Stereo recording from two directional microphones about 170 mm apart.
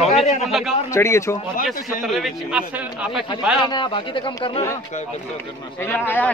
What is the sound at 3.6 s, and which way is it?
Speech, 30° left (ahead or behind).